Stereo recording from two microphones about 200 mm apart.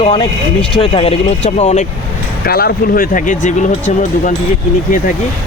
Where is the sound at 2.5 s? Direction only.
50° left (ahead or behind).